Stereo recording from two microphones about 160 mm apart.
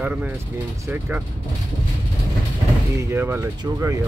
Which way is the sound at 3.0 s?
15° right (ahead or behind).